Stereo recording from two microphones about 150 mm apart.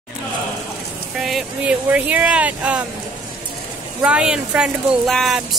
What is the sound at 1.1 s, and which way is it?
Speech, 5° right (ahead or behind).